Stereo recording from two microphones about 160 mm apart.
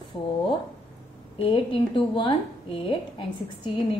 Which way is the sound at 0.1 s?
30° left (ahead or behind).